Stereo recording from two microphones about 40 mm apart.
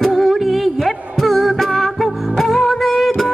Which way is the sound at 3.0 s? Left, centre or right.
Centre.